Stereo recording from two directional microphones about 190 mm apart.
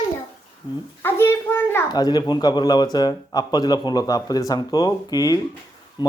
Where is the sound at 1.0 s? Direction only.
10° left (ahead or behind).